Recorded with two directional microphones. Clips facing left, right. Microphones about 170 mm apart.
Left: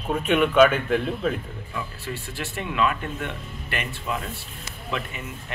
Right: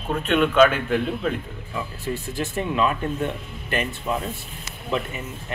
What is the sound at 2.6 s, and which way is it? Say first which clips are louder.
Speech: right 2 dB; 30° right (ahead or behind).